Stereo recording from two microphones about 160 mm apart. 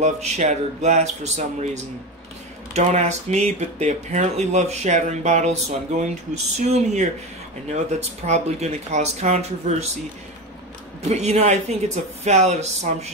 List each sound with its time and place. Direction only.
0.0 s speech: 45° right (ahead or behind)
8.3 s speech: 45° right (ahead or behind)
11.1 s speech: 45° right (ahead or behind)